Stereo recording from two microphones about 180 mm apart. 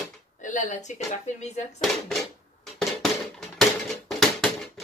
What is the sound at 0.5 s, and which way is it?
Speech, 40° left (ahead or behind).